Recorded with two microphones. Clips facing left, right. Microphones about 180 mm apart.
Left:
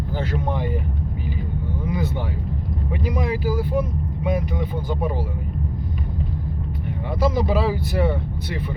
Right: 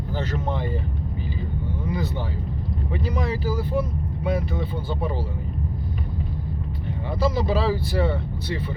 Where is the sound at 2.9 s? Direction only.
15° left (ahead or behind).